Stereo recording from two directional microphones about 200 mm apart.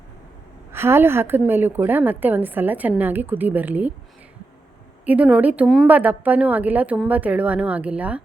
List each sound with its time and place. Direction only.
0.7 s a woman's voice: 10° right (ahead or behind)
5.0 s a woman's voice: 5° right (ahead or behind)